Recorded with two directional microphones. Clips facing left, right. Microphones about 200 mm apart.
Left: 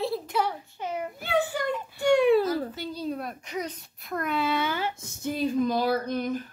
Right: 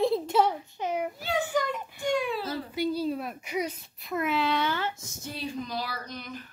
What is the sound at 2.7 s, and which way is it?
Speech, 10° right (ahead or behind).